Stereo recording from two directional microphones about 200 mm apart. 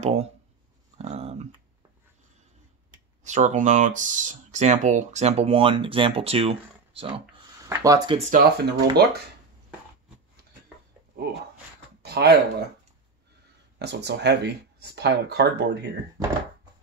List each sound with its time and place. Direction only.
0.0 s speech: 30° right (ahead or behind)
0.9 s a sound: 30° right (ahead or behind)
3.3 s speech: 35° right (ahead or behind)
7.6 s speech: 15° right (ahead or behind)
8.3 s speech: 55° right (ahead or behind)
12.0 s a sound: 55° right (ahead or behind)
13.7 s speech: 55° right (ahead or behind)